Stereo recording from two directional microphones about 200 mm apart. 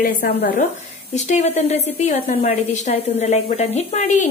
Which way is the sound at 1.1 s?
35° left (ahead or behind).